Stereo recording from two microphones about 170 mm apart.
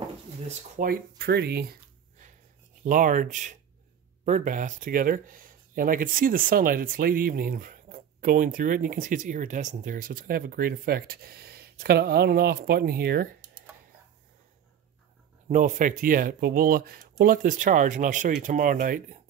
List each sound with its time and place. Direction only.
0.5 s speech: 40° right (ahead or behind)
0.8 s speech: 65° right (ahead or behind)
2.8 s speech: 50° right (ahead or behind)
15.4 s speech: 45° right (ahead or behind)